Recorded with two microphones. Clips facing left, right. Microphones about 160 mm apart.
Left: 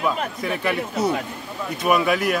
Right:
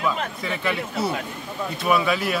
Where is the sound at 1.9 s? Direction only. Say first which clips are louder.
Left 2 dB; 10° left (ahead or behind).